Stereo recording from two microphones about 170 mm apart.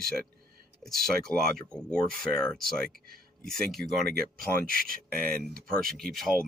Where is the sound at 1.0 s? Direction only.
5° left (ahead or behind).